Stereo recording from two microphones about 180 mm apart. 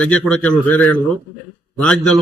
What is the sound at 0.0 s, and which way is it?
A man's voice, 5° left (ahead or behind).